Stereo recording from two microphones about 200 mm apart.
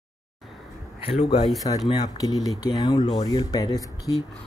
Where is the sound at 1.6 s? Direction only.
20° left (ahead or behind).